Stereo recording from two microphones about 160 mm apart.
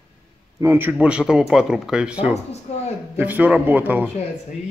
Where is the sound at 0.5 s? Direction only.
15° right (ahead or behind).